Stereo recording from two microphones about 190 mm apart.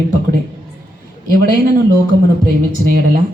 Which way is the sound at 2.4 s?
50° right (ahead or behind).